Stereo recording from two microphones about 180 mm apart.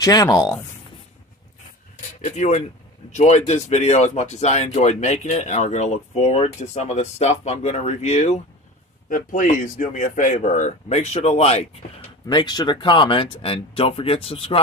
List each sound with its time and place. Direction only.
0.0 s speech: 20° left (ahead or behind)
2.2 s speech: 40° left (ahead or behind)
12.3 s speech: 25° left (ahead or behind)